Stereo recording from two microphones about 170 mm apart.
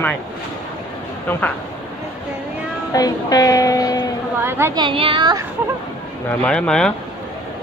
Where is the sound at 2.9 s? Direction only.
20° left (ahead or behind).